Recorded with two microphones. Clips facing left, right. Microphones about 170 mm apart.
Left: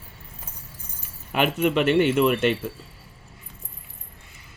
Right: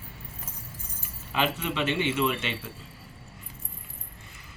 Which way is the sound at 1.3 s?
55° left (ahead or behind).